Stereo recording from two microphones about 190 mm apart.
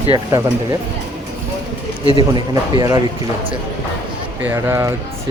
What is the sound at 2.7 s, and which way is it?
Speech, 20° right (ahead or behind).